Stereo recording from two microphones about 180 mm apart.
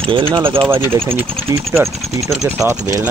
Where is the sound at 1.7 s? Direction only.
15° right (ahead or behind).